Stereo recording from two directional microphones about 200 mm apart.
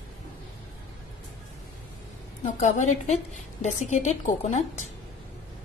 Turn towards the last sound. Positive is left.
turn(degrees=40)  # may be behind; listen again after turning